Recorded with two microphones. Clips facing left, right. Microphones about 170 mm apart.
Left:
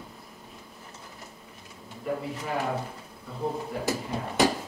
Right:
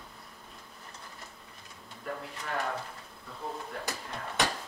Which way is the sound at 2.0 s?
10° left (ahead or behind).